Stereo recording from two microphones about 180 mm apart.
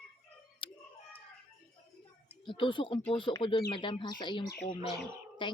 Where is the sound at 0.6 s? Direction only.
25° left (ahead or behind).